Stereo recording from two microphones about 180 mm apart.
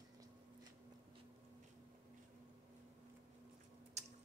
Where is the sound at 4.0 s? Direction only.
40° right (ahead or behind).